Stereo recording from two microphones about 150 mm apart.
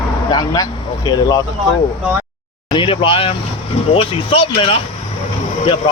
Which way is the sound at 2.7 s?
35° left (ahead or behind).